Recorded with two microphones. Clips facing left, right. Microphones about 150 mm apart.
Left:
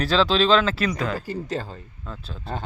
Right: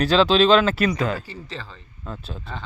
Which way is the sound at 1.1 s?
45° left (ahead or behind).